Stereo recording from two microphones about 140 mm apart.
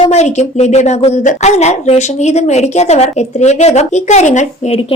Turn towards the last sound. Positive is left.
turn(degrees=60)  # may be behind; listen again after turning